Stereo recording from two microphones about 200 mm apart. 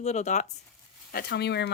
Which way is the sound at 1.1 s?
50° left (ahead or behind).